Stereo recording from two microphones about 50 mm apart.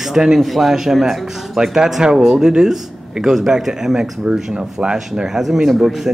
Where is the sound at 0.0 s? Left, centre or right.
Centre.